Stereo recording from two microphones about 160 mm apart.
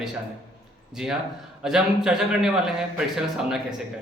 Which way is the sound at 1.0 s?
5° right (ahead or behind).